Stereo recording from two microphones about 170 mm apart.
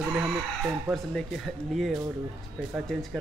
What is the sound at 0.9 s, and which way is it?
Speech, centre (ahead or behind).